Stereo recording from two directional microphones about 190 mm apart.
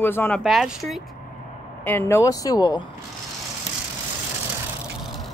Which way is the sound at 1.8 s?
10° left (ahead or behind).